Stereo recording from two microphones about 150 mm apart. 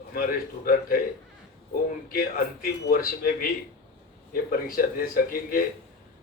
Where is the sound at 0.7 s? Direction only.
75° left (ahead or behind).